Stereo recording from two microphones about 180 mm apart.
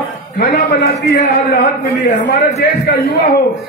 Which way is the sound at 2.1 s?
45° left (ahead or behind).